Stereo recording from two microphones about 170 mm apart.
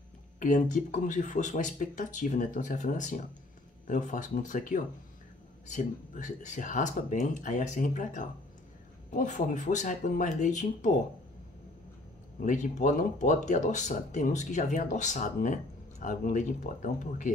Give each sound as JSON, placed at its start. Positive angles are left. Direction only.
{"t": 0.4, "sound": "speech", "side_deg": 50}
{"t": 12.4, "sound": "speech", "side_deg": 45}